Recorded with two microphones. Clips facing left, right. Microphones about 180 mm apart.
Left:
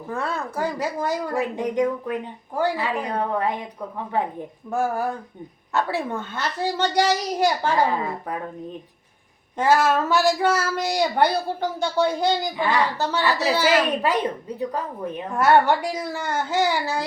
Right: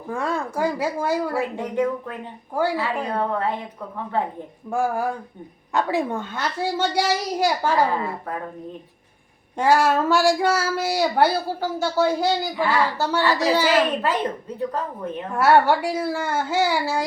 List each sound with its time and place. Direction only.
0.1 s speech: 15° right (ahead or behind)
1.5 s speech: 15° left (ahead or behind)
4.7 s speech: 10° right (ahead or behind)
9.6 s speech: 10° right (ahead or behind)
13.7 s speech: 15° left (ahead or behind)
15.3 s speech: 10° right (ahead or behind)